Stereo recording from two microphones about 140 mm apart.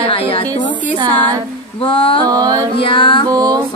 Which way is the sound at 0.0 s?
40° left (ahead or behind).